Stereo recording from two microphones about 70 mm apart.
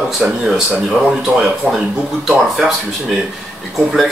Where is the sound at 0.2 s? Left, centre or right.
Centre.